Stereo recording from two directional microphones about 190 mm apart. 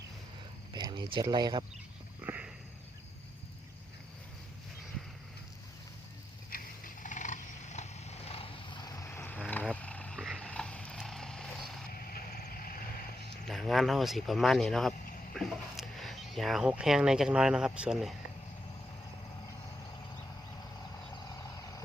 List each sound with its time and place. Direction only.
0.7 s speech: 20° right (ahead or behind)
2.2 s sniff: 10° right (ahead or behind)
6.5 s a sound: 45° left (ahead or behind); by 9.6 s 10° left (ahead or behind)
9.7 s wild animals: 5° left (ahead or behind)
10.2 s a sound: centre (ahead or behind)
11.9 s vehicle: 50° left (ahead or behind)
13.5 s speech: centre (ahead or behind)